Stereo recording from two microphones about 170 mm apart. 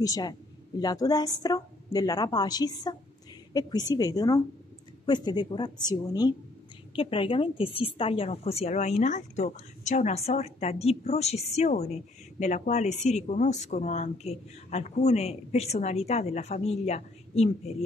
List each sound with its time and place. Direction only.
0.0 s a woman's voice: 20° left (ahead or behind); by 17.5 s 40° left (ahead or behind)